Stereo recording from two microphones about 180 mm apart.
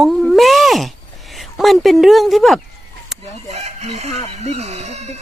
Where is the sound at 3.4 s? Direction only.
40° right (ahead or behind).